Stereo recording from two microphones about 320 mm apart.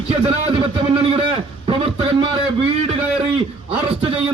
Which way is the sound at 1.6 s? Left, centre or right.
Centre.